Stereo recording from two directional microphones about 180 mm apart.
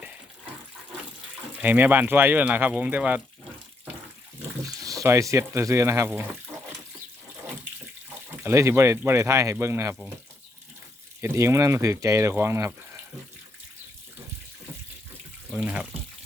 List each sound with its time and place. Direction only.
1.6 s speech: 10° right (ahead or behind)
4.8 s speech: 20° right (ahead or behind)
8.4 s speech: 15° right (ahead or behind)
11.2 s speech: 15° right (ahead or behind)
15.4 s water tap: 5° right (ahead or behind)